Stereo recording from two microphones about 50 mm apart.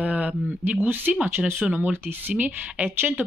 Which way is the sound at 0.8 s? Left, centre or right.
Right.